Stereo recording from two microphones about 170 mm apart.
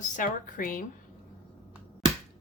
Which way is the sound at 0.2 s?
55° left (ahead or behind).